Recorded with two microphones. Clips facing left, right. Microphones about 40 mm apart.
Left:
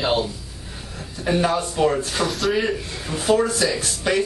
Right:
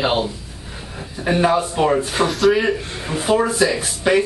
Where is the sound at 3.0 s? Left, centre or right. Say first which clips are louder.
Right 1 dB; centre.